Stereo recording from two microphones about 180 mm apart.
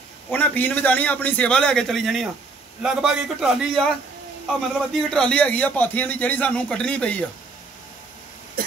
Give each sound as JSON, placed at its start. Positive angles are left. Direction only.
{"t": 0.3, "sound": "a man's voice", "side_deg": 10}
{"t": 4.9, "sound": "a man's voice", "side_deg": 5}